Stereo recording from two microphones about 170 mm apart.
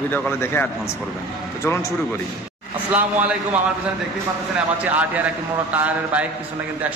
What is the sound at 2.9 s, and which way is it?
Speech, 10° right (ahead or behind).